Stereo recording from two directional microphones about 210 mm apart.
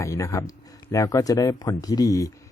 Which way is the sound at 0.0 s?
15° left (ahead or behind).